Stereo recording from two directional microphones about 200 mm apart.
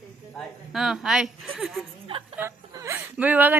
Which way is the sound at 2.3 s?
15° right (ahead or behind).